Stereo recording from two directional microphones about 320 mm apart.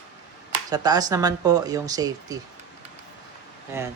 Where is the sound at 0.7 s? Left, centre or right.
Centre.